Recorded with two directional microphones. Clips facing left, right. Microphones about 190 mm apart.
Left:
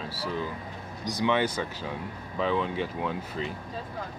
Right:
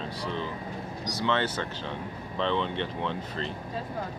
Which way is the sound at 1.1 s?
15° left (ahead or behind).